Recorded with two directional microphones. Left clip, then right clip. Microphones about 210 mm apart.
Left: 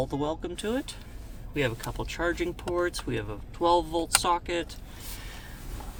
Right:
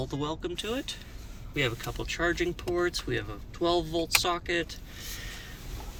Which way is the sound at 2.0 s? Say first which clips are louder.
Right 1 dB; 55° left (ahead or behind).